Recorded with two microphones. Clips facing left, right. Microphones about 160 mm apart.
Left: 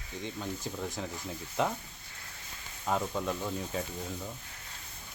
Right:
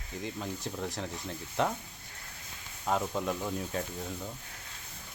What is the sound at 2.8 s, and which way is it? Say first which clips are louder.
Speech: right 1 dB; 5° right (ahead or behind).